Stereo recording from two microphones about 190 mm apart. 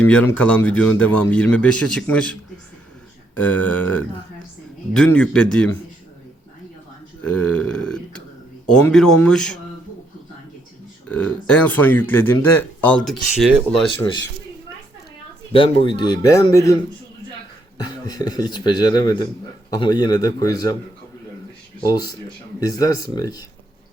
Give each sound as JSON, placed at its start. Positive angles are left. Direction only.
{"t": 0.0, "sound": "speech", "side_deg": 10}
{"t": 7.2, "sound": "speech", "side_deg": 5}
{"t": 11.1, "sound": "speech", "side_deg": 5}
{"t": 15.5, "sound": "speech", "side_deg": 25}
{"t": 17.8, "sound": "speech", "side_deg": 20}
{"t": 21.8, "sound": "speech", "side_deg": 20}